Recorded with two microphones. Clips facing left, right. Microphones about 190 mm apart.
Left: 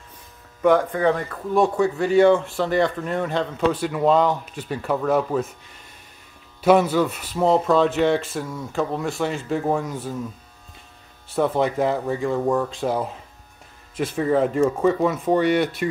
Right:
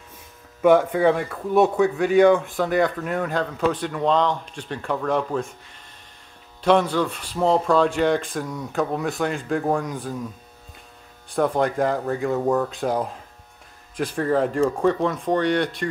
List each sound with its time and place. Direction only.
0.6 s speech: 10° right (ahead or behind)
2.6 s speech: centre (ahead or behind)
3.8 s speech: 5° left (ahead or behind)
6.6 s speech: 5° left (ahead or behind)
11.2 s speech: 5° left (ahead or behind)
13.9 s speech: 5° left (ahead or behind)